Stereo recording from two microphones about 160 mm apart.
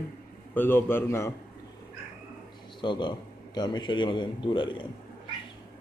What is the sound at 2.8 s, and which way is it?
A man's voice, 30° left (ahead or behind).